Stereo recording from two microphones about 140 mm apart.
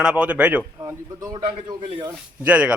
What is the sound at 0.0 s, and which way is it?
Speech, 5° right (ahead or behind).